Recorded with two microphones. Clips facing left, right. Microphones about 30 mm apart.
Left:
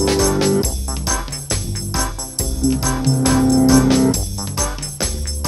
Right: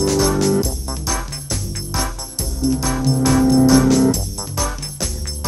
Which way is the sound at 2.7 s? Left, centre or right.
Left.